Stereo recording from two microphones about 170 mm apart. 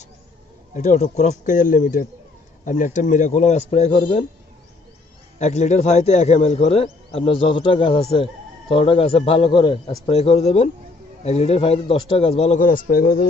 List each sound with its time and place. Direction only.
0.7 s speech: 45° left (ahead or behind)
5.4 s a man's voice: 45° left (ahead or behind)
12.5 s speech: 55° left (ahead or behind)